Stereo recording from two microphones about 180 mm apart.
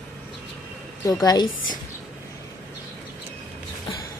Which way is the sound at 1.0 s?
20° left (ahead or behind).